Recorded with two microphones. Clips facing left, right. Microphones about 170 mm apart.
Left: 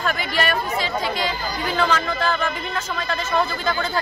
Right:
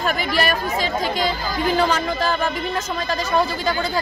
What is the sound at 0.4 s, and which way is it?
Speech, 45° right (ahead or behind).